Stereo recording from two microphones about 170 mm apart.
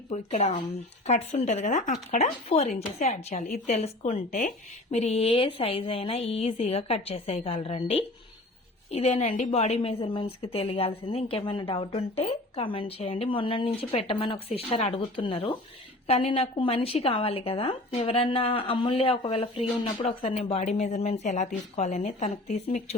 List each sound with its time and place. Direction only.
0.1 s a woman's voice: 40° left (ahead or behind)